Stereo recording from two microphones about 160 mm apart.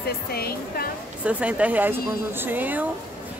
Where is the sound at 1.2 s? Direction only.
10° right (ahead or behind).